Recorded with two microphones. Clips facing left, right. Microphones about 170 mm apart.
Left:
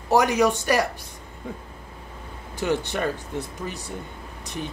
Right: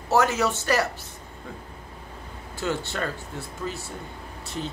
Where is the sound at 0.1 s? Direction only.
15° left (ahead or behind).